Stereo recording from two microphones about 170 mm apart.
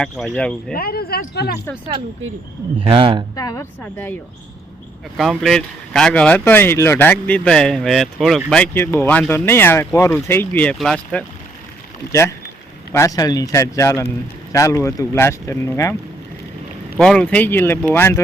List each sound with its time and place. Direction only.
0.2 s speech: centre (ahead or behind)
0.7 s speech: 65° left (ahead or behind)
2.8 s speech: 30° right (ahead or behind)
3.3 s speech: 20° left (ahead or behind)
5.1 s speech: centre (ahead or behind)
12.9 s speech: 20° left (ahead or behind)
17.0 s speech: 5° left (ahead or behind)